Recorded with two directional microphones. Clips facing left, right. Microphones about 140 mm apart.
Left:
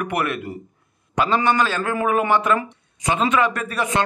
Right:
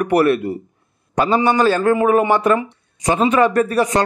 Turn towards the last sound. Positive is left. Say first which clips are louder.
# right 8 dB
turn(degrees=-35)  # may be behind; listen again after turning